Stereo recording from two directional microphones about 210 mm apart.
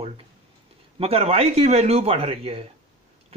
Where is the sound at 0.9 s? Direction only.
30° right (ahead or behind).